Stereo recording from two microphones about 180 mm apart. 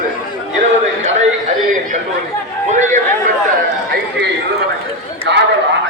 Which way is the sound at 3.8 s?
60° right (ahead or behind).